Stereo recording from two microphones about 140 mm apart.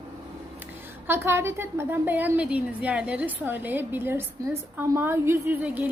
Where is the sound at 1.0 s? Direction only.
15° right (ahead or behind).